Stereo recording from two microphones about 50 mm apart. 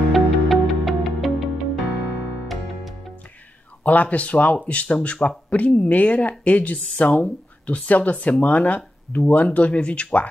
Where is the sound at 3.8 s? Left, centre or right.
Left.